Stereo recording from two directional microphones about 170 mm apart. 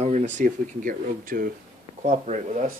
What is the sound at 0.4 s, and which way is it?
Speech, 55° right (ahead or behind).